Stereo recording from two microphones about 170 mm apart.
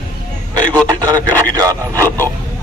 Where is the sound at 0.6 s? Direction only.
20° right (ahead or behind).